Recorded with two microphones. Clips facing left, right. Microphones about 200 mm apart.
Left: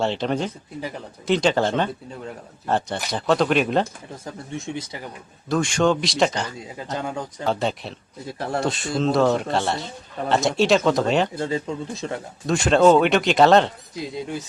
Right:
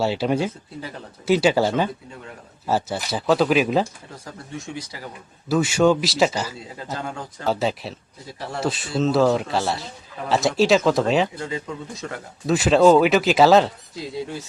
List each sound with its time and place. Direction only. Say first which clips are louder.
0.0 s a man's voice: right 2 dB; 5° right (ahead or behind)
4.5 s speech: left 2 dB; 25° left (ahead or behind)
5.5 s a man's voice: right 2 dB; 5° right (ahead or behind)
11.3 s speech: left 4 dB; 30° left (ahead or behind)
12.5 s a man's voice: right 1 dB; 5° right (ahead or behind)
13.9 s speech: left 1 dB; 20° left (ahead or behind)